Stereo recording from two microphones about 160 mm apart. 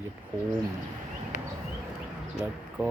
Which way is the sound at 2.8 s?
10° right (ahead or behind).